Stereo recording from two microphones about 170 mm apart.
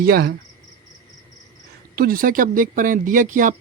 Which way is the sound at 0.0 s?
65° right (ahead or behind).